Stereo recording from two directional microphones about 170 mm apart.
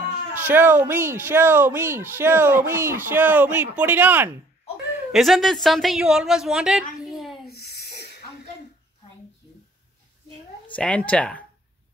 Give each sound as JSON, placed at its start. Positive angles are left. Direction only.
{"t": 0.3, "sound": "speech", "side_deg": -10}
{"t": 5.1, "sound": "a woman's voice", "side_deg": 0}
{"t": 7.4, "sound": "a sound", "side_deg": 65}
{"t": 10.7, "sound": "speech", "side_deg": 5}